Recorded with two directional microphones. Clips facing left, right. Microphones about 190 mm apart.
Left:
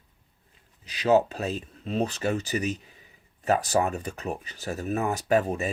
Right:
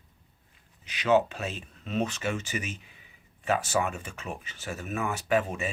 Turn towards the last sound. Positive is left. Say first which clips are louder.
# left 3 dB
turn(degrees=40)  # may be behind; listen again after turning